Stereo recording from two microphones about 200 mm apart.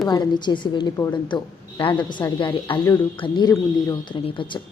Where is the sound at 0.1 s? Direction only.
20° left (ahead or behind).